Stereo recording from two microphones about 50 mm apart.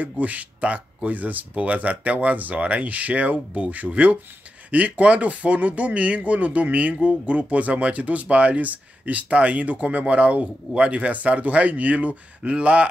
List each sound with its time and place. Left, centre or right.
0.0 s speech: right